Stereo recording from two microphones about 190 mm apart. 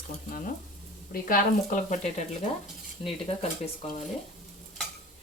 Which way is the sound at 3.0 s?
30° left (ahead or behind).